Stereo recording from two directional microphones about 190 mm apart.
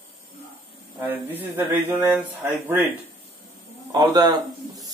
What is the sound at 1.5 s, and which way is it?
Mantra, 10° right (ahead or behind).